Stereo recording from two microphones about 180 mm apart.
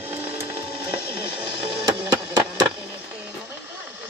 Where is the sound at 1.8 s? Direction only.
20° right (ahead or behind).